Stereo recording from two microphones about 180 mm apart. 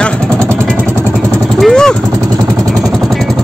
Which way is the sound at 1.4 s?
5° left (ahead or behind).